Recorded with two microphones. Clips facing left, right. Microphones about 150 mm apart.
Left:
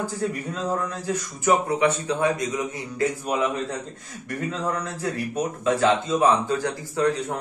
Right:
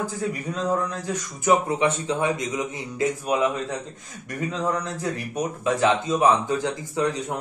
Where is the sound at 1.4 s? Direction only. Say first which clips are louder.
Even; 20° right (ahead or behind).